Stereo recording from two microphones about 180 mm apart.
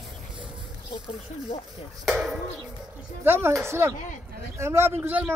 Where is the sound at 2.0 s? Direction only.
Centre (ahead or behind).